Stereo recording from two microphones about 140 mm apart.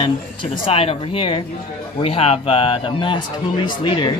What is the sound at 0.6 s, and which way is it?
Speech, 45° left (ahead or behind).